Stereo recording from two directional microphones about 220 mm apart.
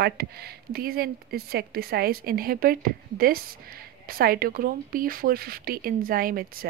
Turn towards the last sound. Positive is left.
turn(degrees=-40)  # may be behind; listen again after turning